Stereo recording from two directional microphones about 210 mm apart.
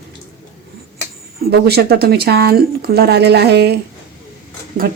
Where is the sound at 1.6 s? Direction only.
50° right (ahead or behind).